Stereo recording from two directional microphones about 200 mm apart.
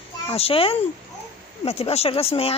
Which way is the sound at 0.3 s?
30° left (ahead or behind).